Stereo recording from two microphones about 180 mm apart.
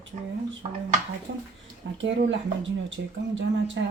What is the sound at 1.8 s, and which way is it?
Speech, 90° right.